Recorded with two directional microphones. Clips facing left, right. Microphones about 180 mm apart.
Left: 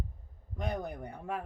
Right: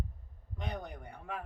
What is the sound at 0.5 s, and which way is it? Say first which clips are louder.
Speech: left 5 dB; 45° left (ahead or behind).